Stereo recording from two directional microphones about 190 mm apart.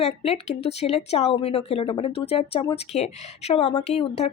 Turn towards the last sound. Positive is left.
turn(degrees=35)  # may be behind; listen again after turning